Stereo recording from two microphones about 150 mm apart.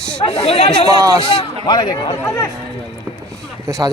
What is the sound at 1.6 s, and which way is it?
Speech, 30° left (ahead or behind).